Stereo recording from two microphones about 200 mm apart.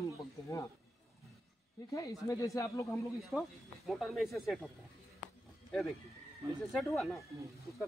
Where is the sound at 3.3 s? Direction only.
Centre (ahead or behind).